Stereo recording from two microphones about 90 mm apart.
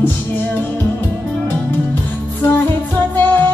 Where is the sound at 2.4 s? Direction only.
20° left (ahead or behind).